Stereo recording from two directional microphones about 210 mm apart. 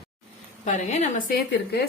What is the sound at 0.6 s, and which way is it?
Speech, 35° left (ahead or behind).